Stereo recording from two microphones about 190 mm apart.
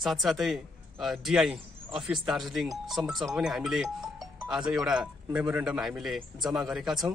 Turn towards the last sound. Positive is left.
turn(degrees=0)  # may be behind; listen again after turning